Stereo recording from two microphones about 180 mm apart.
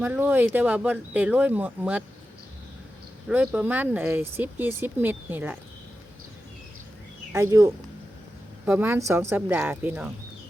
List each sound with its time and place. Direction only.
0.0 s speech: 10° right (ahead or behind)
3.2 s speech: 5° right (ahead or behind)
7.3 s speech: 15° right (ahead or behind)